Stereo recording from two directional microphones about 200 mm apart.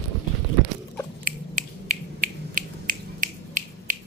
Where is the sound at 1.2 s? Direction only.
40° right (ahead or behind).